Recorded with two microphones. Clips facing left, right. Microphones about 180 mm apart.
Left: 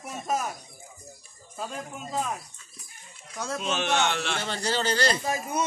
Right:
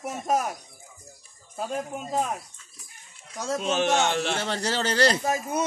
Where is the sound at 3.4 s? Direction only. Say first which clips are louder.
Right 4 dB; 45° right (ahead or behind).